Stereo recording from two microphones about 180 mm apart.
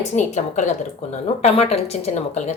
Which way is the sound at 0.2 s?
40° left (ahead or behind).